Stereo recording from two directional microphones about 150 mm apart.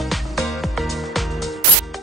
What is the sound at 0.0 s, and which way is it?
Music, centre (ahead or behind).